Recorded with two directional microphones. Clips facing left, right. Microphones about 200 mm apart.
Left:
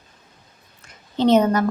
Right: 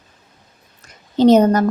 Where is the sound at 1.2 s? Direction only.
40° right (ahead or behind).